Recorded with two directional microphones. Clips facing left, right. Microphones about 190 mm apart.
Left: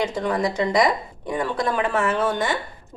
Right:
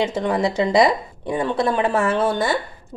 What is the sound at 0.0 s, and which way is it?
A woman's voice, 25° right (ahead or behind).